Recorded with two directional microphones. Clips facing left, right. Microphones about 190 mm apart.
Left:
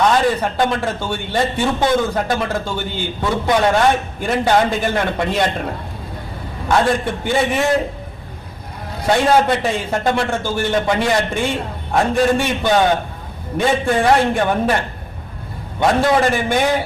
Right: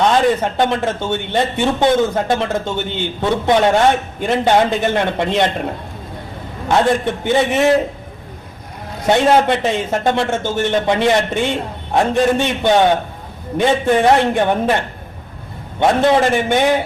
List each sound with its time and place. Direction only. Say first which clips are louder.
0.4 s a man's voice: right 2 dB; 20° right (ahead or behind)
6.7 s a man's voice: right 2 dB; 20° right (ahead or behind)
9.0 s a man's voice: right 2 dB; 20° right (ahead or behind)